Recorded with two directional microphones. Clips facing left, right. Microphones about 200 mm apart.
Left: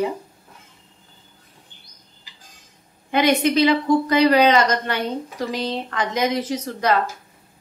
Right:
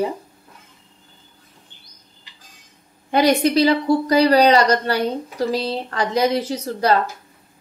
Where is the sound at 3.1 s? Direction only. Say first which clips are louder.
Right 2 dB; 35° right (ahead or behind).